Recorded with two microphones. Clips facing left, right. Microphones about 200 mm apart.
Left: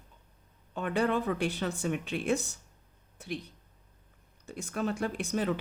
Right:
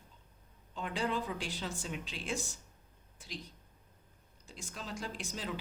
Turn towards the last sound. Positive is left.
turn(degrees=60)  # may be behind; listen again after turning